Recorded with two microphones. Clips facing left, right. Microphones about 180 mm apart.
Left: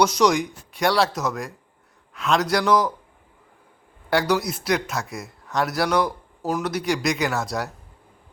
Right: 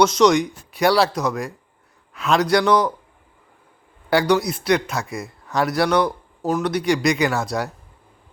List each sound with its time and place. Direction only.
0.0 s speech: 10° left (ahead or behind)
0.7 s speech: 5° right (ahead or behind)
4.1 s speech: centre (ahead or behind)